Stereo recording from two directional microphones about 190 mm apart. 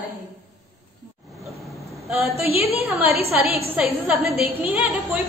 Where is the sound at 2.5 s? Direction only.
30° left (ahead or behind).